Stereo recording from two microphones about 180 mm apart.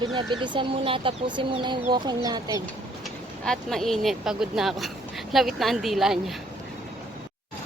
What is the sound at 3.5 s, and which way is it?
Speech, centre (ahead or behind).